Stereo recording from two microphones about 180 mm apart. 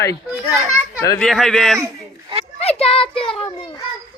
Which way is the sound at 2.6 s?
35° left (ahead or behind).